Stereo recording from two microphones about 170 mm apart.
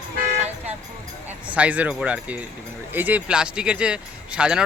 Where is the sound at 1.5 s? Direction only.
10° right (ahead or behind).